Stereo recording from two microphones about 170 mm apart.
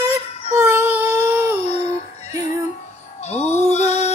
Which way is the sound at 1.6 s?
40° left (ahead or behind).